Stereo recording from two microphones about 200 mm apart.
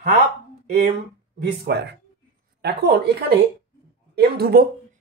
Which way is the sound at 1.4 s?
55° right (ahead or behind).